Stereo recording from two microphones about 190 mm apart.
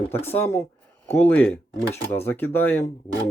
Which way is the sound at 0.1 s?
10° left (ahead or behind).